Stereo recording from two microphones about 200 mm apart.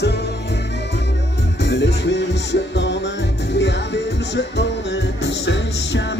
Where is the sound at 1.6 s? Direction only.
60° left (ahead or behind).